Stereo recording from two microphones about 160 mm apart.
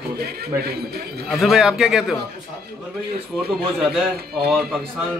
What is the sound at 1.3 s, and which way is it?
Speech, centre (ahead or behind).